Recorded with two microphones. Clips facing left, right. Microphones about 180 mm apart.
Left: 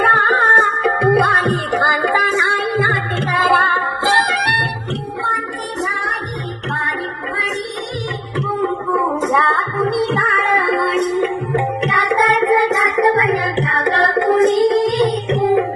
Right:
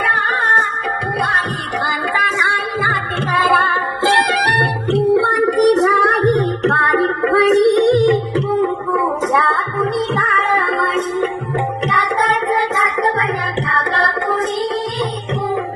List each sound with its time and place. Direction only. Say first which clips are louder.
1.1 s music: left 7 dB; 60° left (ahead or behind)
2.7 s a sound: left 4 dB; 25° left (ahead or behind)
3.4 s music: even; centre (ahead or behind)
4.9 s music: right 16 dB; 70° right (ahead or behind)
8.9 s music: even; 10° right (ahead or behind)
10.3 s music: left 1 dB; 15° left (ahead or behind)
13.1 s music: left 4 dB; 15° left (ahead or behind)